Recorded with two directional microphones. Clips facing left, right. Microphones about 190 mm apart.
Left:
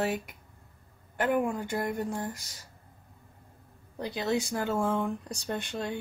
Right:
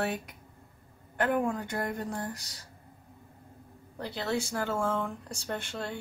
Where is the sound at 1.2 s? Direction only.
10° left (ahead or behind).